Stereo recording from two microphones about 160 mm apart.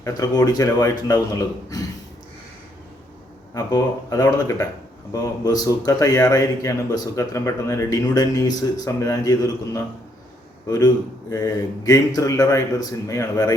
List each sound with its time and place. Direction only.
0.0 s speech: 25° left (ahead or behind)
3.5 s speech: 20° left (ahead or behind)